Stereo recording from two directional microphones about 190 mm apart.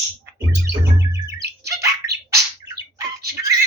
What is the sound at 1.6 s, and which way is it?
Bird, 15° right (ahead or behind).